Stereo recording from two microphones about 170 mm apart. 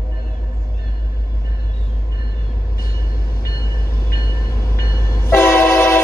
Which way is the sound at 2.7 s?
60° left (ahead or behind).